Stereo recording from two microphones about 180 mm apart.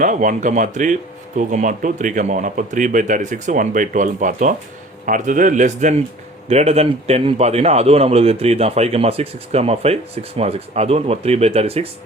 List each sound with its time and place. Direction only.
0.0 s a man's voice: 45° right (ahead or behind)